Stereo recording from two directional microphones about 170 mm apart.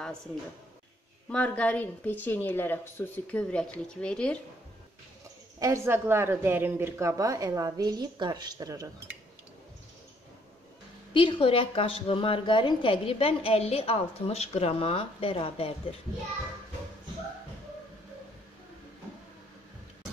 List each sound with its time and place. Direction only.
1.3 s a woman's voice: 10° left (ahead or behind)
5.6 s speech: 15° right (ahead or behind)
11.1 s a woman's voice: 30° left (ahead or behind)